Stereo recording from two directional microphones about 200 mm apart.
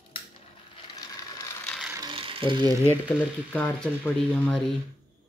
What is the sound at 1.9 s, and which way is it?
Ratchet, 25° right (ahead or behind).